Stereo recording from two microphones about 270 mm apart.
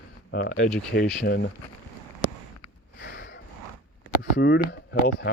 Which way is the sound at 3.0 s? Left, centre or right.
Left.